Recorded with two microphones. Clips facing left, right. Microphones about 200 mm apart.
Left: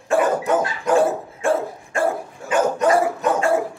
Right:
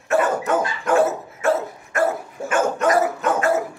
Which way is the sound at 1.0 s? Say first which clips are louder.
Left 1 dB; 30° left (ahead or behind).